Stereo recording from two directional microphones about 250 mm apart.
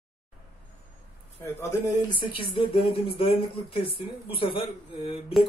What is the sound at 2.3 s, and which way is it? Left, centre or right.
Speech, left.